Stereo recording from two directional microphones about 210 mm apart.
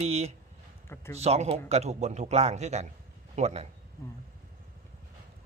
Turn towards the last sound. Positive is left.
turn(degrees=-30)  # may be behind; listen again after turning